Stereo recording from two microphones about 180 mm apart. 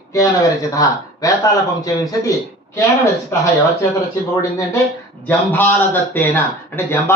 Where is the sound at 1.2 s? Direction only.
20° left (ahead or behind).